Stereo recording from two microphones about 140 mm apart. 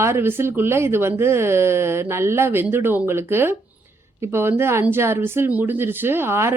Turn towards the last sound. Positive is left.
turn(degrees=-20)  # may be behind; listen again after turning